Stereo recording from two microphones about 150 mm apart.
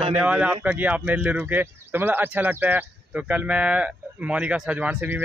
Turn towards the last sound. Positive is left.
turn(degrees=-10)  # may be behind; listen again after turning